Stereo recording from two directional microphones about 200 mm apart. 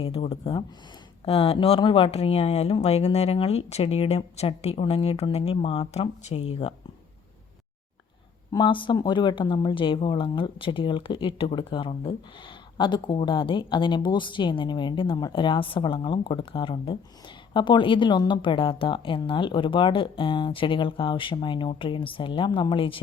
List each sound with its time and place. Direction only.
0.0 s speech: 30° left (ahead or behind)
8.5 s speech: 25° left (ahead or behind)